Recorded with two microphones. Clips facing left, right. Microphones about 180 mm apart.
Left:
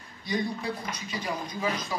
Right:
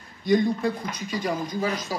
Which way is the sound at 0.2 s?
50° right (ahead or behind).